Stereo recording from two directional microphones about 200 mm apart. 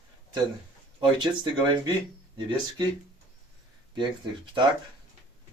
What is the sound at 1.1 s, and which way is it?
Speech, 25° right (ahead or behind).